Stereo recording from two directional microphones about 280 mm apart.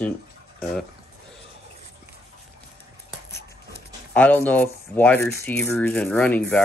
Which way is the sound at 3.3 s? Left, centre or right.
Left.